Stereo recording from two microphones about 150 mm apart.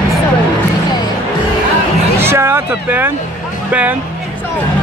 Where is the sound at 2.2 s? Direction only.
15° right (ahead or behind).